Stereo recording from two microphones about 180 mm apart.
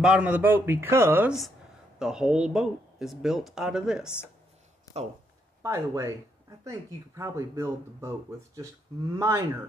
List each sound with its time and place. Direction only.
0.0 s speech: 5° right (ahead or behind)
4.9 s speech: 35° right (ahead or behind)
5.6 s speech: 15° right (ahead or behind)
7.2 s speech: 15° right (ahead or behind)
9.1 s speech: 15° right (ahead or behind)